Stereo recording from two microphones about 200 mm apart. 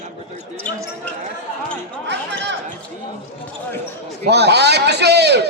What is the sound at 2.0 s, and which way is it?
Chatter, 60° right (ahead or behind).